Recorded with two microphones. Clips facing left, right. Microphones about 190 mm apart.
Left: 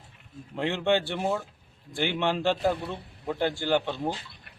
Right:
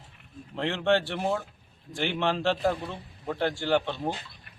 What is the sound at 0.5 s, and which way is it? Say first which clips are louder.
A man's voice: even; 10° left (ahead or behind).